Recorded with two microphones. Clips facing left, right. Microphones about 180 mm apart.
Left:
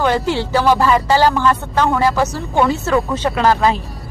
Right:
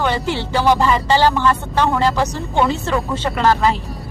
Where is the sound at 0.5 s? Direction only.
15° right (ahead or behind).